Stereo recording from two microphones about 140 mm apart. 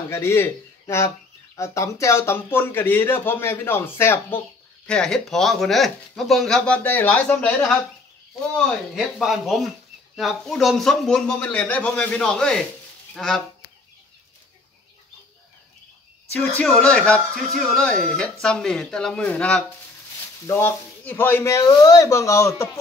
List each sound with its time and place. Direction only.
0.1 s speech: 15° left (ahead or behind)
4.8 s speech: 5° left (ahead or behind)
13.1 s goose: 5° left (ahead or behind)
16.3 s speech: 5° left (ahead or behind)